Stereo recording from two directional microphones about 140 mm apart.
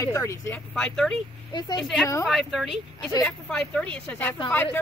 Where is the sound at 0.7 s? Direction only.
5° left (ahead or behind).